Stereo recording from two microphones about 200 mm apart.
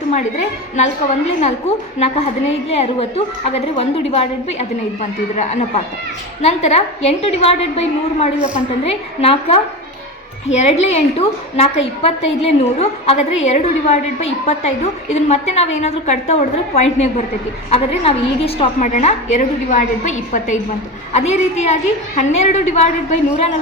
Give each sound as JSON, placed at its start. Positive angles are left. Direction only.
{"t": 0.1, "sound": "a woman's voice", "side_deg": 35}